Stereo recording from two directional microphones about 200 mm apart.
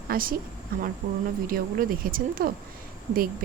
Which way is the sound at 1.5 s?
45° right (ahead or behind).